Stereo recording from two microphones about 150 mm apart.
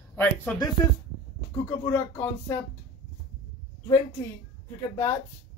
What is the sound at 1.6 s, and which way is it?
Speech, 15° left (ahead or behind).